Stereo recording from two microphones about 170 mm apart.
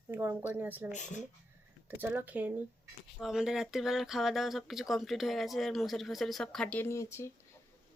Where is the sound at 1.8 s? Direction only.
10° right (ahead or behind).